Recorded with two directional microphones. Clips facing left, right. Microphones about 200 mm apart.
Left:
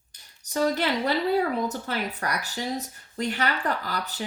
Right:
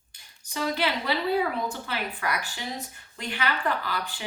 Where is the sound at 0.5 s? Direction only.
45° left (ahead or behind).